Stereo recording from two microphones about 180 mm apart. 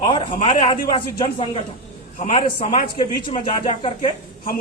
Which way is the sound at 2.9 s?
25° left (ahead or behind).